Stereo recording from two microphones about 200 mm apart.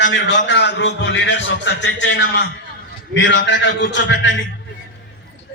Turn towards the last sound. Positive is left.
turn(degrees=65)  # may be behind; listen again after turning